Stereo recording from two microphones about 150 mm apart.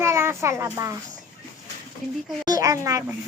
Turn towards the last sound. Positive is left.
turn(degrees=-20)  # may be behind; listen again after turning